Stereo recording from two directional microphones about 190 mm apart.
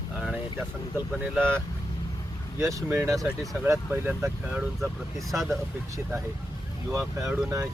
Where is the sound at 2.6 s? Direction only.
15° right (ahead or behind); by 5.5 s centre (ahead or behind).